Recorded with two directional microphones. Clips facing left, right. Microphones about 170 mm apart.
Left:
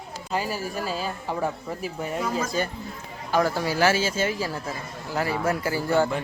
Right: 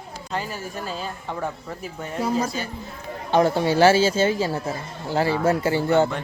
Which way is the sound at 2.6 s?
50° left (ahead or behind).